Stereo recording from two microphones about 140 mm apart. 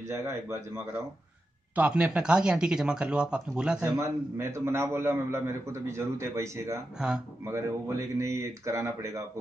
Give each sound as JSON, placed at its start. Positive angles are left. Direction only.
{"t": 0.1, "sound": "a man's voice", "side_deg": -20}
{"t": 1.8, "sound": "speech", "side_deg": -10}
{"t": 4.0, "sound": "a man's voice", "side_deg": -20}